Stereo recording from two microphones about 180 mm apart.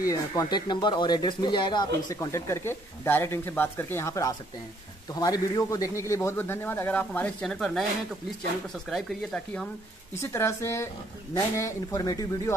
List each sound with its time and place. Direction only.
0.0 s a man's voice: 20° left (ahead or behind); by 7.8 s 5° left (ahead or behind)
8.8 s speech: centre (ahead or behind)
10.2 s a man's voice: 15° left (ahead or behind)